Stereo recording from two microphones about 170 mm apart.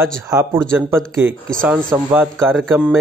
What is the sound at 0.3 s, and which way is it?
Speech, 20° right (ahead or behind).